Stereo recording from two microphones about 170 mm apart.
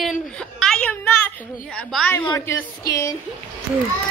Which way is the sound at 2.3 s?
15° left (ahead or behind).